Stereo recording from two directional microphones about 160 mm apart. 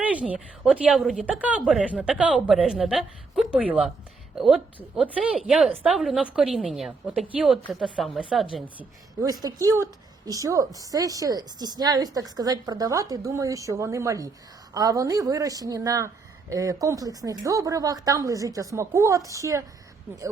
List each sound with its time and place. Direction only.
0.0 s a woman's voice: 10° right (ahead or behind)
9.2 s a woman's voice: 25° right (ahead or behind)